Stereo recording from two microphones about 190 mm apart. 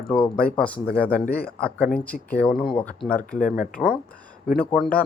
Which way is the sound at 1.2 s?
55° left (ahead or behind).